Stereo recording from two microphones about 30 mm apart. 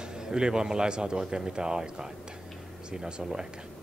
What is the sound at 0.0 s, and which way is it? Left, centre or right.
Speech, right.